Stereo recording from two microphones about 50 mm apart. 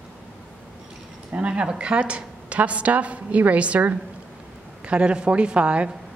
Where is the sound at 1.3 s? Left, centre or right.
Right.